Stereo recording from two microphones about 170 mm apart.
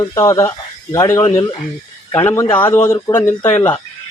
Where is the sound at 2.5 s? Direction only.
10° left (ahead or behind).